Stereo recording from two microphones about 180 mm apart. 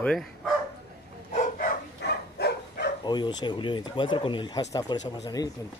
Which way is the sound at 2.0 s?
65° left (ahead or behind).